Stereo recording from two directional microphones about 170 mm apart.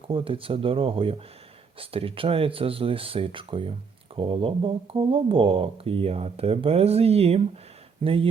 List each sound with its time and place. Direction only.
0.1 s speech: 30° right (ahead or behind)